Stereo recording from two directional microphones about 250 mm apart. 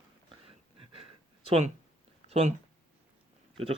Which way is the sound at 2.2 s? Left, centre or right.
Right.